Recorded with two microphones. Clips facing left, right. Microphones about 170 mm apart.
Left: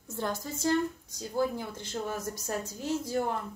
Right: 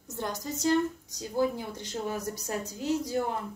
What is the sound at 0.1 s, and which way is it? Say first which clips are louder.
Speech: even; 20° right (ahead or behind).